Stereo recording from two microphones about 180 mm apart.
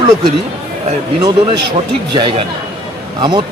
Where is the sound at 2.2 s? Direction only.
30° right (ahead or behind).